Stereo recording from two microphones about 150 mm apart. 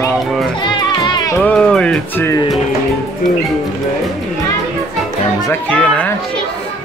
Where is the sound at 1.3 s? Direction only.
10° left (ahead or behind).